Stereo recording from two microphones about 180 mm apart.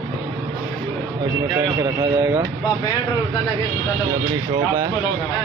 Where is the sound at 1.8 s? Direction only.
20° right (ahead or behind).